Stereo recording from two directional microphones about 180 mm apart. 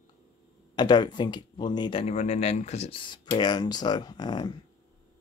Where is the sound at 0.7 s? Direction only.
25° left (ahead or behind).